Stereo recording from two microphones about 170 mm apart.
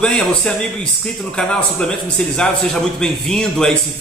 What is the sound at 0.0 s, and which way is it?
A man's voice, 5° left (ahead or behind).